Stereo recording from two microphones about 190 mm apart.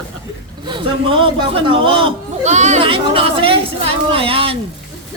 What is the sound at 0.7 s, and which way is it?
A man's voice, 25° right (ahead or behind).